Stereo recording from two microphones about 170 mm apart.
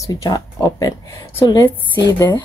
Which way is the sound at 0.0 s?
20° left (ahead or behind).